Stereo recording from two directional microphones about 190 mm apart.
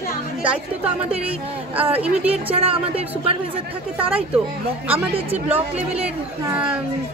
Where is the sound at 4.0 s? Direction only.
5° right (ahead or behind).